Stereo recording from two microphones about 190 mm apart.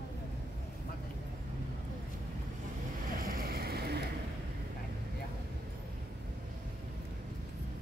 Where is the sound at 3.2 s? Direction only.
50° right (ahead or behind).